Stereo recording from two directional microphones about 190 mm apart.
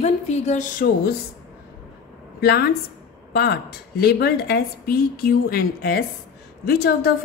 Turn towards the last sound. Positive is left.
turn(degrees=55)  # may be behind; listen again after turning